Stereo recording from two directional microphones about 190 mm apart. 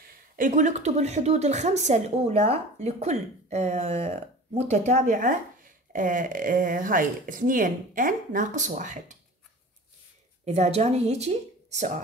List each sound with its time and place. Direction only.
0.0 s a woman's voice: 40° right (ahead or behind)
10.4 s a woman's voice: 35° right (ahead or behind)